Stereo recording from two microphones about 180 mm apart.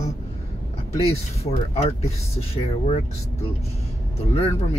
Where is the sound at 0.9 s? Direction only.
35° left (ahead or behind).